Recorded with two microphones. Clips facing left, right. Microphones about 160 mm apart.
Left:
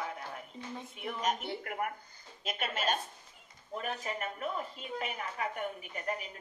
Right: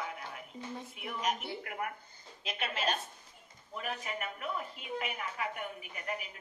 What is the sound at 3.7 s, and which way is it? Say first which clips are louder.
A woman's voice: left 2 dB; 35° left (ahead or behind).